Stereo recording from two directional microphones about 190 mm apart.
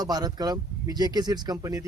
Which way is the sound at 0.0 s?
20° right (ahead or behind).